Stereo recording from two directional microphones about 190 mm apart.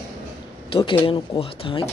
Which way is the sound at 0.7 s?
30° left (ahead or behind).